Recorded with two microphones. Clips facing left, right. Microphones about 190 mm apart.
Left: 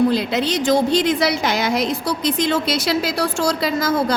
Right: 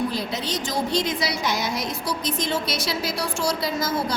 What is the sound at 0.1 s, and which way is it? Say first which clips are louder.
A woman's voice: left 8 dB; 70° left (ahead or behind).